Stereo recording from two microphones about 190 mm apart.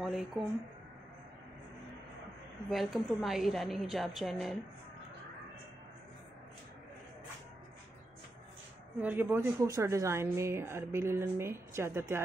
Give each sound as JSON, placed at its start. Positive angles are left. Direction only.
{"t": 0.0, "sound": "speech", "side_deg": 0}
{"t": 2.7, "sound": "a woman's voice", "side_deg": 0}
{"t": 9.0, "sound": "speech", "side_deg": -10}